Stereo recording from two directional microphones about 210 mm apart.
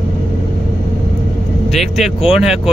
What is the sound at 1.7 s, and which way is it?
Speech, centre (ahead or behind).